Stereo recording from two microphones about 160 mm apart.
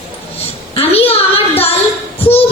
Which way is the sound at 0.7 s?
35° left (ahead or behind).